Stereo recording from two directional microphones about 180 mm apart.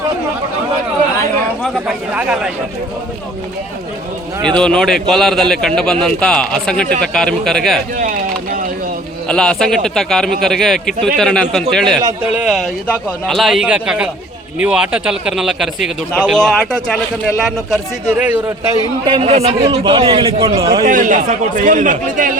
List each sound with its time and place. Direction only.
1.6 s a man's voice: 5° right (ahead or behind)
4.4 s a man's voice: 5° left (ahead or behind)
9.2 s a man's voice: 5° left (ahead or behind)
18.2 s a man's voice: 10° right (ahead or behind)
19.0 s a man's voice: 30° right (ahead or behind)
20.8 s a man's voice: 45° right (ahead or behind)